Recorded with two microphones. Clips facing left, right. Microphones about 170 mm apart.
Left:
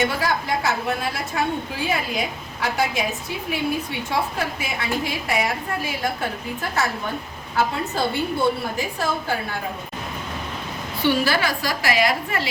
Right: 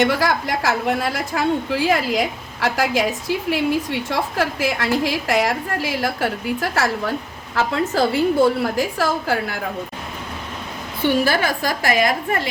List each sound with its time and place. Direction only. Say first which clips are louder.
0.0 s a woman's voice: right 4 dB; 75° right (ahead or behind)
11.0 s a woman's voice: right 2 dB; 50° right (ahead or behind)